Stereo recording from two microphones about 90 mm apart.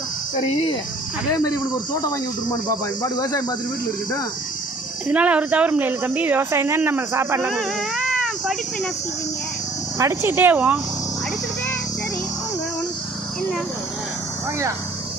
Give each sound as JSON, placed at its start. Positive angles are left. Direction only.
{"t": 1.3, "sound": "speech", "side_deg": 40}
{"t": 5.0, "sound": "speech", "side_deg": -15}
{"t": 7.5, "sound": "speech", "side_deg": 0}
{"t": 10.0, "sound": "speech", "side_deg": -30}